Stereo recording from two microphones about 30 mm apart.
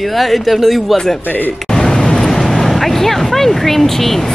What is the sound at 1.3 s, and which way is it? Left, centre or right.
Speech, left.